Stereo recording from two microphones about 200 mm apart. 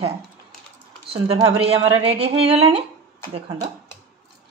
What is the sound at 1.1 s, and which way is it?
Speech, 30° right (ahead or behind).